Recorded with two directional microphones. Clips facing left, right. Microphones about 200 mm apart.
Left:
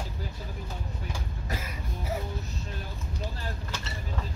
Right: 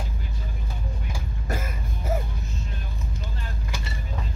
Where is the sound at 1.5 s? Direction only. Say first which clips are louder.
Right 5 dB; 50° right (ahead or behind).